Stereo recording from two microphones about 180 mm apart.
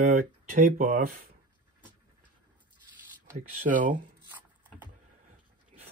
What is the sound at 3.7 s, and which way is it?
Speech, 45° right (ahead or behind).